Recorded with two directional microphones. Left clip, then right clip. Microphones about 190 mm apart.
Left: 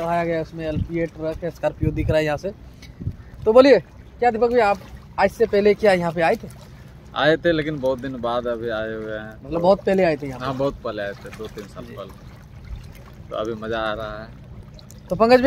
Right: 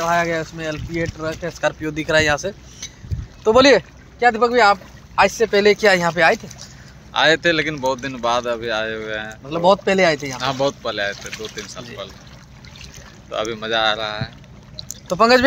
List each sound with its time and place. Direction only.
0.0 s speech: 5° left (ahead or behind)
7.2 s speech: 15° left (ahead or behind)
9.5 s speech: centre (ahead or behind)
10.4 s speech: 15° left (ahead or behind)
13.3 s speech: 20° left (ahead or behind)
14.9 s a sound: 5° right (ahead or behind)